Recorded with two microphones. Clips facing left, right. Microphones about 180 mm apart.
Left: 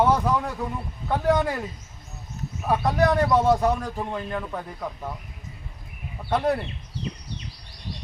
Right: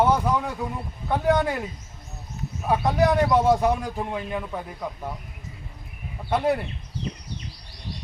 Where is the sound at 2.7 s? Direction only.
10° right (ahead or behind).